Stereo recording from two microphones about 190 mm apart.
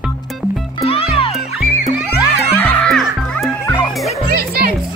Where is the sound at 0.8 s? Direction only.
30° left (ahead or behind).